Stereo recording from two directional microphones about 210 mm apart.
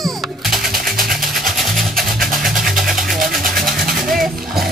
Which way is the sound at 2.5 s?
Centre (ahead or behind).